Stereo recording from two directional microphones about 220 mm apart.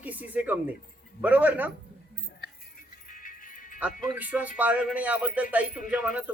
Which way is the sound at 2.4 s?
40° left (ahead or behind).